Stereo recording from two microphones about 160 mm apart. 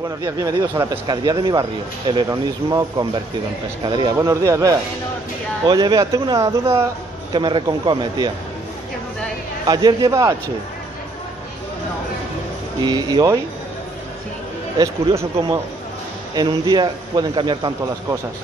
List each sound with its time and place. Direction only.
0.2 s speech: 20° right (ahead or behind)
7.3 s speech: 30° right (ahead or behind)
9.7 s speech: 25° right (ahead or behind)
12.8 s speech: 25° right (ahead or behind)
15.1 s speech: 20° right (ahead or behind)
16.7 s speech: 25° right (ahead or behind)